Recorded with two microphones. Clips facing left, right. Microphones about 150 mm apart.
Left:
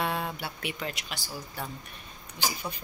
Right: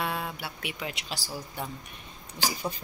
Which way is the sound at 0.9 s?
35° right (ahead or behind).